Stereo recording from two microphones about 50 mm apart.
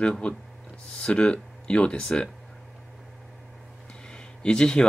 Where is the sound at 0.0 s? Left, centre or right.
Centre.